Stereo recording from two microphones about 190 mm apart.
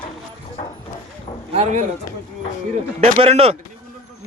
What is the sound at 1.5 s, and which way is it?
Speech, 40° right (ahead or behind).